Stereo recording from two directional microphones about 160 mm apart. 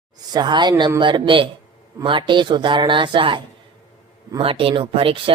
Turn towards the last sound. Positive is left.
turn(degrees=-35)  # may be behind; listen again after turning